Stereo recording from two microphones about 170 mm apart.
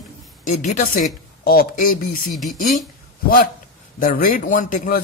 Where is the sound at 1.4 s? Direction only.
60° left (ahead or behind).